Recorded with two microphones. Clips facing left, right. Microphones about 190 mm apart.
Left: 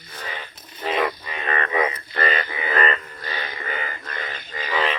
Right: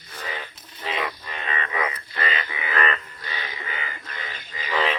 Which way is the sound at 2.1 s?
45° left (ahead or behind).